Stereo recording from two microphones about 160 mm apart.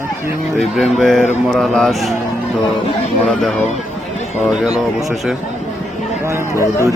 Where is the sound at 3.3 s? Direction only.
Centre (ahead or behind).